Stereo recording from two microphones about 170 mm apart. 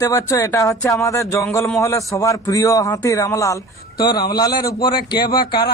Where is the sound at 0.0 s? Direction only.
15° left (ahead or behind).